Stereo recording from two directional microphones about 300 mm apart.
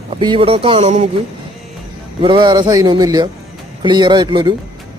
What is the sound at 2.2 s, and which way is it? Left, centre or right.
A man's voice, centre.